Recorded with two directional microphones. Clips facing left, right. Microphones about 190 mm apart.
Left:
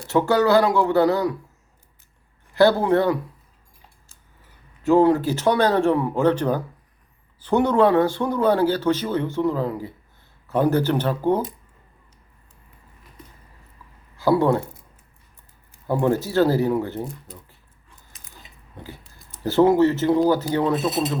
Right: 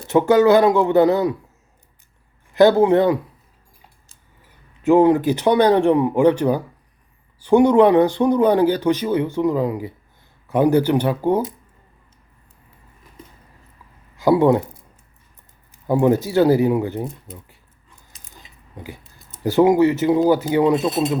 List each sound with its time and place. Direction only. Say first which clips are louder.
0.1 s speech: right 4 dB; 20° right (ahead or behind)
2.5 s speech: right 4 dB; 20° right (ahead or behind)
4.8 s speech: right 3 dB; 20° right (ahead or behind)
14.2 s speech: right 4 dB; 15° right (ahead or behind)
15.9 s speech: right 4 dB; 15° right (ahead or behind)
19.3 s speech: right 2 dB; 15° right (ahead or behind)